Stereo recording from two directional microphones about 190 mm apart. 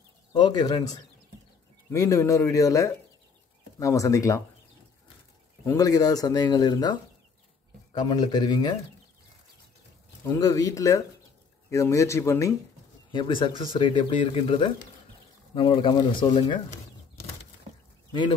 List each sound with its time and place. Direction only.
0.3 s a man's voice: 25° left (ahead or behind)
5.7 s speech: 20° left (ahead or behind)
10.2 s a man's voice: 15° left (ahead or behind)